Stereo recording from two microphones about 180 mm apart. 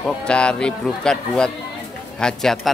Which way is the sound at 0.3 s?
5° left (ahead or behind).